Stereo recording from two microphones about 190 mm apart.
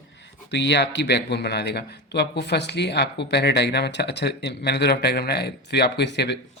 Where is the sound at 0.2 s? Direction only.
65° left (ahead or behind).